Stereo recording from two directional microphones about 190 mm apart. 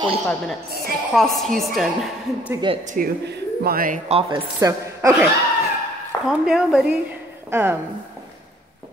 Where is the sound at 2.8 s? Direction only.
40° right (ahead or behind).